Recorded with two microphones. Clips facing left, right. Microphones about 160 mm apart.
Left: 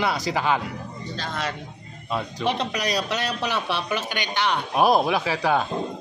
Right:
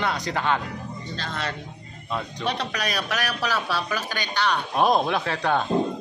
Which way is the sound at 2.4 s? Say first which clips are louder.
Left 3 dB; 20° left (ahead or behind).